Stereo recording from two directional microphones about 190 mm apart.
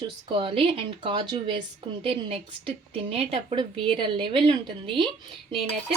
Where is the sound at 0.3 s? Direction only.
30° right (ahead or behind).